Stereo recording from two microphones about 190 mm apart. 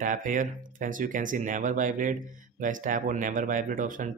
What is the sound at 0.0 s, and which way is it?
Speech, 45° right (ahead or behind).